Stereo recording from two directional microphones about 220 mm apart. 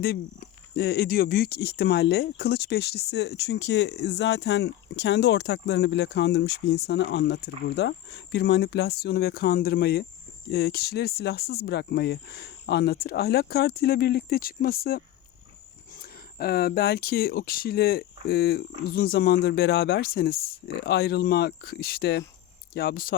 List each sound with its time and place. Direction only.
0.8 s speech: 45° left (ahead or behind)
16.4 s speech: 45° left (ahead or behind)